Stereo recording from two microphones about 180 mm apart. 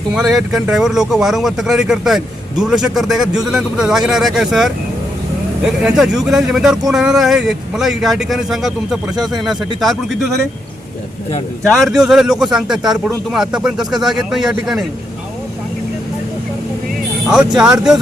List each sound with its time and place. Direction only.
0.1 s speech: centre (ahead or behind)
11.7 s speech: centre (ahead or behind)
17.3 s speech: 5° right (ahead or behind)